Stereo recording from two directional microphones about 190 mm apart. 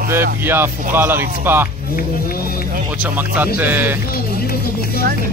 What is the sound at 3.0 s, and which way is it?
Speech, 10° right (ahead or behind).